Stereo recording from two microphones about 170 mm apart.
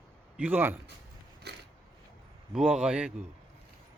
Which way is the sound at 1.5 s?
80° right.